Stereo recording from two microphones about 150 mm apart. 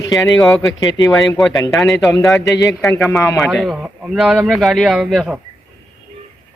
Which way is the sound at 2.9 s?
5° left (ahead or behind).